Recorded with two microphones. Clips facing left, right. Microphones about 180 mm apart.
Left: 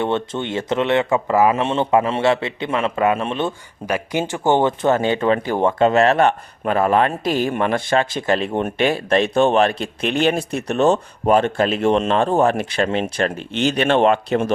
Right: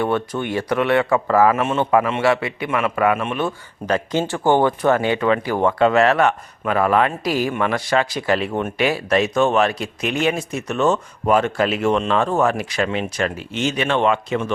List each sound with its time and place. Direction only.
0.0 s speech: 25° left (ahead or behind)
3.8 s speech: 10° left (ahead or behind); by 14.3 s 35° left (ahead or behind)